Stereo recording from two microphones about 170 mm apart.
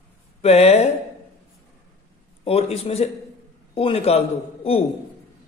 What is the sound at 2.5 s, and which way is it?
A man's voice, 35° left (ahead or behind).